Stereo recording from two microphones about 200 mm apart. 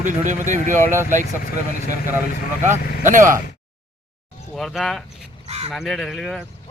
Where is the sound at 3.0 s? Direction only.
40° right (ahead or behind).